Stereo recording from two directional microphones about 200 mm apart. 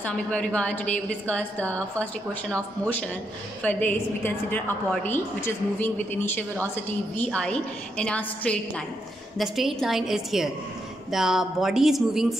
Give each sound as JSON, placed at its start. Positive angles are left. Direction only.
{"t": 0.0, "sound": "a woman's voice", "side_deg": 5}